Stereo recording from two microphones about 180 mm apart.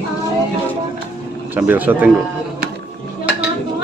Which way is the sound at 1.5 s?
10° right (ahead or behind).